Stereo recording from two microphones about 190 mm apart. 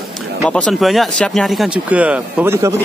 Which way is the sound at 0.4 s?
5° left (ahead or behind).